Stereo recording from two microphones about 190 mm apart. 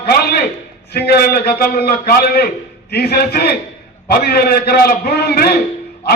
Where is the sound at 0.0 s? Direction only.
55° left (ahead or behind).